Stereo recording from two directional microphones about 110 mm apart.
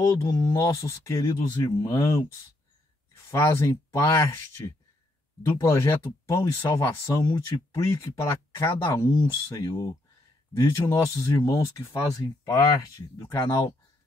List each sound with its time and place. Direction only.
0.0 s speech: 25° left (ahead or behind)
3.3 s speech: 25° left (ahead or behind)